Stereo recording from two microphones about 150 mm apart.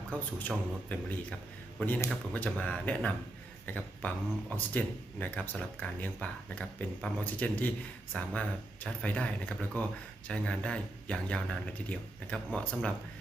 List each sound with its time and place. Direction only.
0.1 s speech: 10° left (ahead or behind)